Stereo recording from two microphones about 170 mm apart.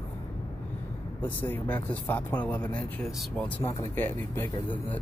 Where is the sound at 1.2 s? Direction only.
10° left (ahead or behind).